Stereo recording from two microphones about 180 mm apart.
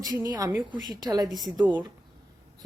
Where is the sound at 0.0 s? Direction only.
20° right (ahead or behind).